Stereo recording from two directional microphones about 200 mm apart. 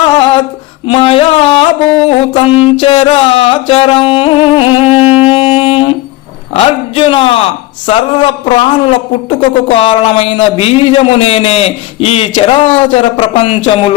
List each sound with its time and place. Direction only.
0.0 s a sound: 25° left (ahead or behind)
0.9 s music: 25° left (ahead or behind)
5.3 s saxophone: 30° left (ahead or behind)
6.5 s a man's voice: 25° left (ahead or behind)
7.9 s music: 25° left (ahead or behind)
9.6 s a man's voice: 25° left (ahead or behind)
12.9 s music: 30° left (ahead or behind)